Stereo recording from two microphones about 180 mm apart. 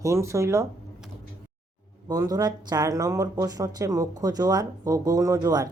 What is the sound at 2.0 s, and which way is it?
Speech, 20° right (ahead or behind).